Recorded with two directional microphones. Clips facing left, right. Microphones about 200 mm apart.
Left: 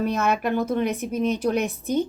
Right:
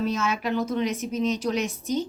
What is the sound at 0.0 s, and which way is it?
A woman's voice, 60° left (ahead or behind).